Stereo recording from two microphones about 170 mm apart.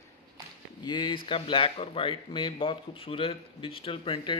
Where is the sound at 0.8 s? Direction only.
25° left (ahead or behind).